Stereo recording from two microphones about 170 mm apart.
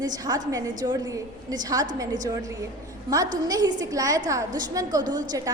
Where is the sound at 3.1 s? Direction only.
25° right (ahead or behind).